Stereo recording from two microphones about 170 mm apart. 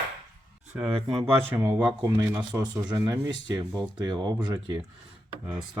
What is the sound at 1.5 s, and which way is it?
Speech, 15° right (ahead or behind).